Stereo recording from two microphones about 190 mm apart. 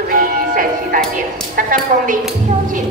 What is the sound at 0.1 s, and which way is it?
Music, 45° right (ahead or behind).